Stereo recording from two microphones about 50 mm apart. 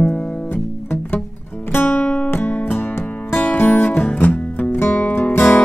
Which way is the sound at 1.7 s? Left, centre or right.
Left.